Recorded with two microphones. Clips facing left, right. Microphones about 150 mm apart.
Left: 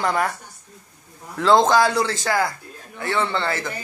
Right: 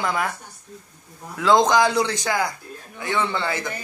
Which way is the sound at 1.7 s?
20° right (ahead or behind).